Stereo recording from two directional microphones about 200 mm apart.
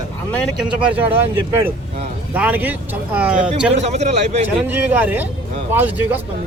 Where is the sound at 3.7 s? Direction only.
35° right (ahead or behind).